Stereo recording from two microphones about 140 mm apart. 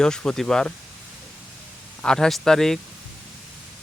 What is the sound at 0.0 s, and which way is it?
Speech, 5° left (ahead or behind).